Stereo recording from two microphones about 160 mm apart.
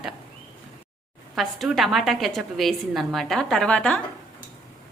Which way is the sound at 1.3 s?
Centre (ahead or behind).